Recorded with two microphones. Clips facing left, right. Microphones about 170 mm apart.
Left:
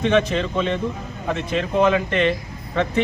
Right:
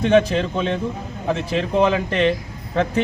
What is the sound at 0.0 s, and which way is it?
Speech, 35° right (ahead or behind).